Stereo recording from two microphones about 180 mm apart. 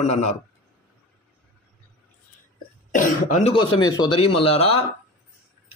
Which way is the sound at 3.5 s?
25° left (ahead or behind).